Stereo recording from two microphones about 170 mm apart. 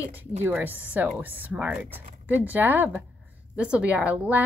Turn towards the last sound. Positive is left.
turn(degrees=-10)  # may be behind; listen again after turning